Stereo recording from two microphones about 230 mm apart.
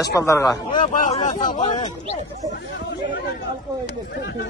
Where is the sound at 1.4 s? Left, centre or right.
Centre.